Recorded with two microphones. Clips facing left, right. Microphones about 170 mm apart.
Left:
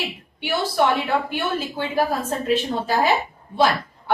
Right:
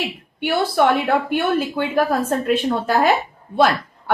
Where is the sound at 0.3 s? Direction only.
55° right (ahead or behind).